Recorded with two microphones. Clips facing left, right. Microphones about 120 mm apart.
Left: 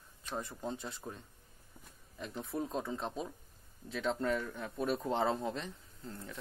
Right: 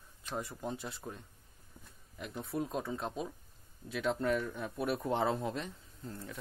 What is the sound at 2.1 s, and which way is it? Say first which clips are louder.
Speech: right 1 dB; 5° right (ahead or behind).